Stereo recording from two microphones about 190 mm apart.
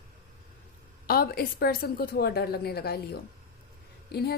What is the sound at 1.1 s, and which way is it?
A woman's voice, 55° left (ahead or behind).